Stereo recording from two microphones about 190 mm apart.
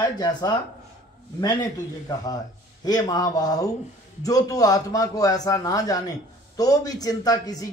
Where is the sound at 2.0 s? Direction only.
20° left (ahead or behind).